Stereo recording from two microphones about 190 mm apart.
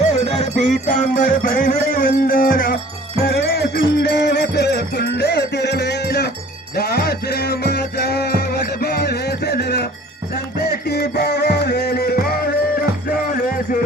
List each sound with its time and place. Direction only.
0.3 s music: 35° left (ahead or behind)